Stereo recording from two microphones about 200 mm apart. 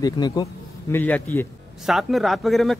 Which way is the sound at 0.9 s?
10° left (ahead or behind).